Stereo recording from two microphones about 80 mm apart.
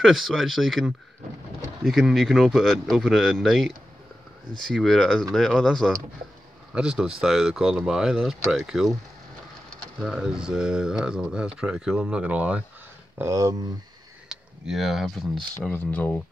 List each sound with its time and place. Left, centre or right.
0.0 s speech: centre
6.7 s speech: centre
10.1 s speech: centre
13.2 s speech: right
14.3 s speech: centre
15.7 s speech: left